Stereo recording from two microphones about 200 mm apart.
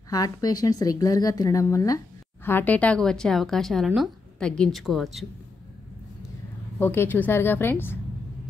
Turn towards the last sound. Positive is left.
turn(degrees=10)  # may be behind; listen again after turning